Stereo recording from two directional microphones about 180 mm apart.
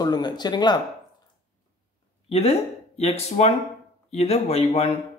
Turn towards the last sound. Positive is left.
turn(degrees=35)  # may be behind; listen again after turning